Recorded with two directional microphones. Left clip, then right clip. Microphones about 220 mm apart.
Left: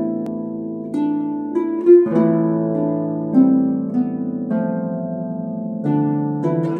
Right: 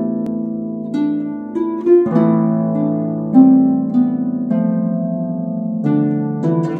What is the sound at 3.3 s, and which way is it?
Harp, 45° right (ahead or behind).